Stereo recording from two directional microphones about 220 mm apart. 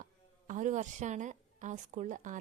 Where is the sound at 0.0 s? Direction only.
35° right (ahead or behind).